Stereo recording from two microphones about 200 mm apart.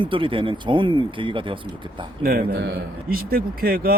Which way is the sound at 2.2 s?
45° right (ahead or behind).